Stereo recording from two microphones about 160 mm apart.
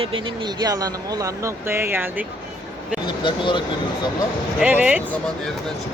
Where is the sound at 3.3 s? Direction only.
30° left (ahead or behind).